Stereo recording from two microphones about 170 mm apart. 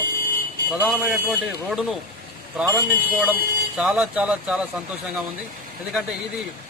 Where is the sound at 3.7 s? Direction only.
5° right (ahead or behind).